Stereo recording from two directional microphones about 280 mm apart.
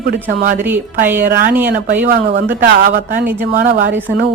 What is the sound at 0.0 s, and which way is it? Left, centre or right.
Speech, right.